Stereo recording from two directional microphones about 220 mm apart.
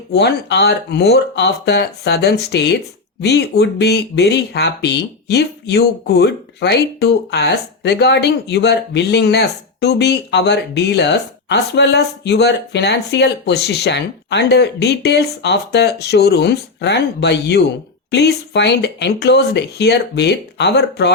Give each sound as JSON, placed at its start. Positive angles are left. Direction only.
{"t": 0.1, "sound": "speech", "side_deg": 50}